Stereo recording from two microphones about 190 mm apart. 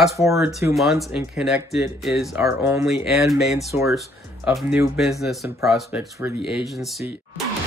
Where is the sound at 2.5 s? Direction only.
15° right (ahead or behind).